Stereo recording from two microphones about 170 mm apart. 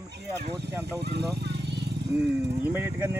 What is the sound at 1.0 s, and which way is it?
Vehicle, 75° right (ahead or behind).